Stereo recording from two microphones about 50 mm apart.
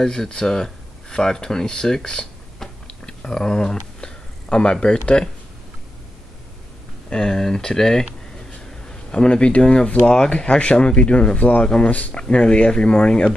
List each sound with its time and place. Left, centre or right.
0.0 s speech: centre
7.1 s speech: centre